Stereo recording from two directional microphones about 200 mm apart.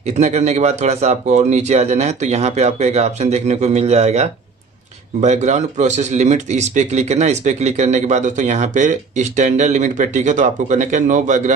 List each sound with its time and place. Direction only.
0.0 s speech: 35° right (ahead or behind)